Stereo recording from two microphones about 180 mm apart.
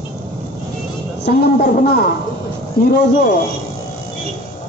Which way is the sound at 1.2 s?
65° left (ahead or behind).